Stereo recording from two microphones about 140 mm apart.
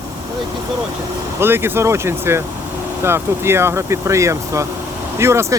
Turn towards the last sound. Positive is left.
turn(degrees=-20)  # may be behind; listen again after turning